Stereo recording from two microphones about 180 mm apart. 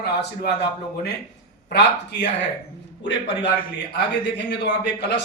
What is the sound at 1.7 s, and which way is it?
A man's voice, 70° left (ahead or behind).